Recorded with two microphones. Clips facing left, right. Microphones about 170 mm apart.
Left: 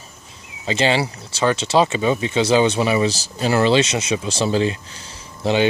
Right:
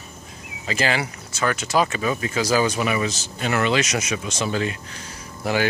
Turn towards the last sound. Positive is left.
turn(degrees=20)  # may be behind; listen again after turning